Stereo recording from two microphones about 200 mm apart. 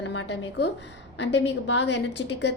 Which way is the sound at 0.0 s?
65° left (ahead or behind).